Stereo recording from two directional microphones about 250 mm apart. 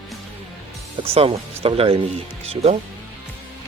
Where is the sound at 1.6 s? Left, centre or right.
Right.